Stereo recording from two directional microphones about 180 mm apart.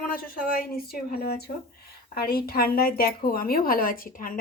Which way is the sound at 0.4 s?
55° left (ahead or behind).